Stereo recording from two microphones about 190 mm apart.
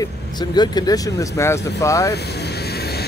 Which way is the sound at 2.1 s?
60° left (ahead or behind).